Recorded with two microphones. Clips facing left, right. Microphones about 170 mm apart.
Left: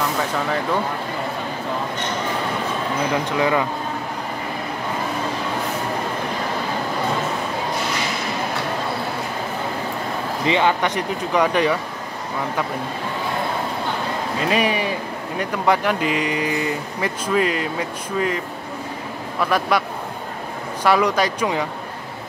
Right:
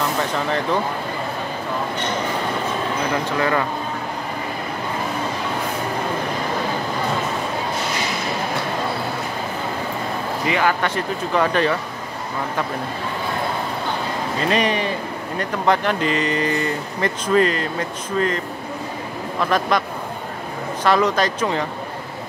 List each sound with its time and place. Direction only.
3.3 s speech: 15° left (ahead or behind)
10.4 s speech: 25° left (ahead or behind)
14.5 s speech: 10° left (ahead or behind)
19.7 s speech: 10° left (ahead or behind)